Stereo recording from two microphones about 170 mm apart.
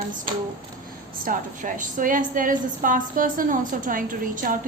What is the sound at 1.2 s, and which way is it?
A woman's voice, 50° right (ahead or behind).